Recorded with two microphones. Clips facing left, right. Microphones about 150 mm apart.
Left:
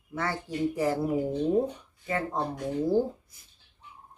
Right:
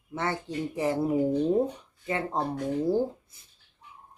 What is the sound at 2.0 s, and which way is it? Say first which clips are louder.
Speech: even; 25° right (ahead or behind).